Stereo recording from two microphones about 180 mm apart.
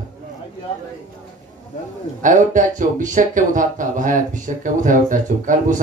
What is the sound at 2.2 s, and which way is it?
Speech, 45° right (ahead or behind).